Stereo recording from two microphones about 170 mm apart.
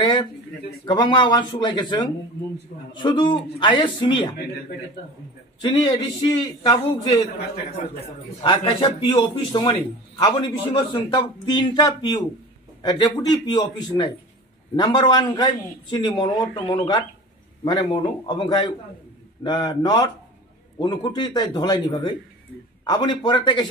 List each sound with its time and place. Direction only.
0.0 s a sound: 25° left (ahead or behind)
0.8 s a man's voice: 25° left (ahead or behind)
5.6 s a man's voice: 25° left (ahead or behind)
8.4 s a man's voice: 30° left (ahead or behind)